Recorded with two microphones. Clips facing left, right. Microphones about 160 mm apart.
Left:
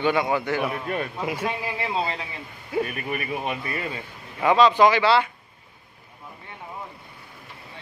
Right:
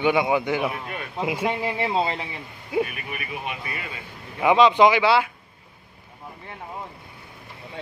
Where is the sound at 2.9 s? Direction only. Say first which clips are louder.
Left 5 dB; 40° left (ahead or behind).